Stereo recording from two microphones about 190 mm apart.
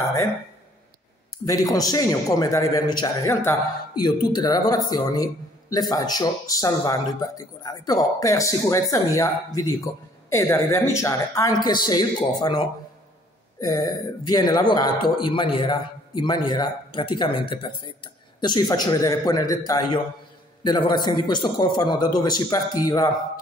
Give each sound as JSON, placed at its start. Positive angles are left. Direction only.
{"t": 1.4, "sound": "speech", "side_deg": 20}